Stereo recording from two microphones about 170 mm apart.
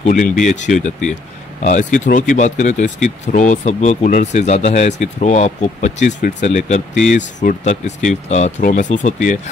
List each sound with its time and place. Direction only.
0.0 s speech: 45° left (ahead or behind)